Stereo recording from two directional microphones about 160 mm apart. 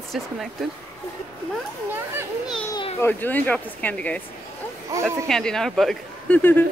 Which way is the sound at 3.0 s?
10° left (ahead or behind).